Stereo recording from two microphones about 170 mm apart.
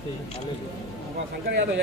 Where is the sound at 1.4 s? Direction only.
90° right.